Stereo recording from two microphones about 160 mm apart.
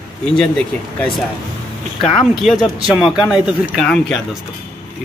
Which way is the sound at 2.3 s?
Centre (ahead or behind).